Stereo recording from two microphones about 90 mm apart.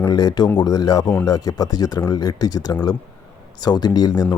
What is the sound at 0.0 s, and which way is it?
Speech, 50° left (ahead or behind).